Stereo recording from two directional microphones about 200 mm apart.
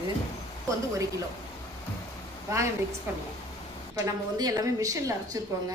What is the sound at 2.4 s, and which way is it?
Speech, 15° right (ahead or behind).